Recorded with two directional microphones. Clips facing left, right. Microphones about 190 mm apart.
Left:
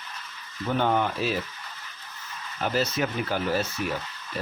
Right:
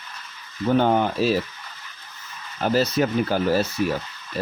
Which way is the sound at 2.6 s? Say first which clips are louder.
Right 6 dB; 35° right (ahead or behind).